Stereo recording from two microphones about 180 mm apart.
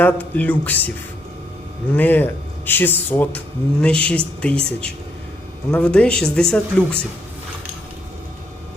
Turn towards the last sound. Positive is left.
turn(degrees=5)  # may be behind; listen again after turning